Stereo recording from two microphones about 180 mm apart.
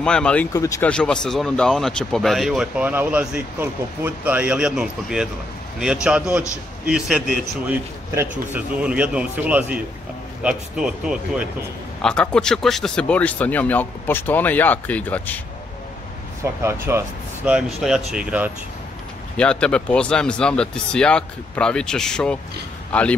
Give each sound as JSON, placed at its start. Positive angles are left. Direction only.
{"t": 0.0, "sound": "speech", "side_deg": 5}
{"t": 0.5, "sound": "speech", "side_deg": 15}
{"t": 0.9, "sound": "speech", "side_deg": 5}
{"t": 6.9, "sound": "a man's voice", "side_deg": -5}
{"t": 16.6, "sound": "a man's voice", "side_deg": -15}
{"t": 17.5, "sound": "speech", "side_deg": -5}
{"t": 19.3, "sound": "a man's voice", "side_deg": 5}